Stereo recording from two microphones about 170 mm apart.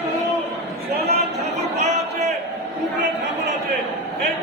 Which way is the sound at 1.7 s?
45° right (ahead or behind).